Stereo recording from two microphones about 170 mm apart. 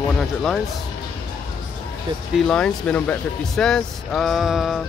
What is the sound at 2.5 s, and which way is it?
Speech, 5° left (ahead or behind).